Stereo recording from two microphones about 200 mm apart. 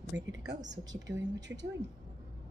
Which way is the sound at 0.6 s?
20° right (ahead or behind).